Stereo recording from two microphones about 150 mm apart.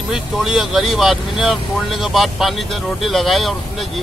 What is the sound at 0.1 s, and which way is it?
Speech, centre (ahead or behind).